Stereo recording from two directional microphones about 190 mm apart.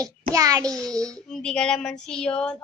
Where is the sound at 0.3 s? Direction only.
20° right (ahead or behind).